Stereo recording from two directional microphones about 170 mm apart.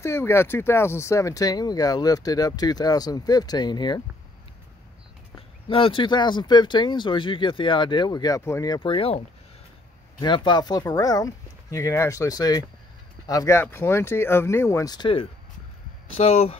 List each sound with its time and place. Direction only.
0.0 s speech: 15° left (ahead or behind)
5.7 s speech: 30° left (ahead or behind)
10.2 s speech: 25° left (ahead or behind)